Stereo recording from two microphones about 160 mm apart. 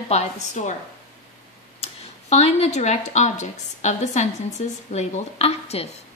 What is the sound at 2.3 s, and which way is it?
A woman's voice, 40° left (ahead or behind).